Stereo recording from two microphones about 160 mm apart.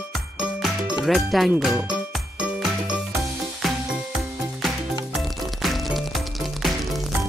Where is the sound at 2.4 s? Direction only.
5° right (ahead or behind).